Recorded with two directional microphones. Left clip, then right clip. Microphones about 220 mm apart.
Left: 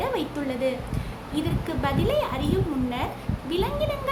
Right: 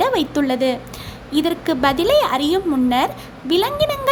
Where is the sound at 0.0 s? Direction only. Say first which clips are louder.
Right 10 dB; 40° right (ahead or behind).